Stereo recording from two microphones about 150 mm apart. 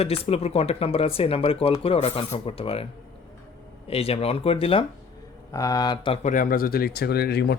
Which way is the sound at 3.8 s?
40° left (ahead or behind).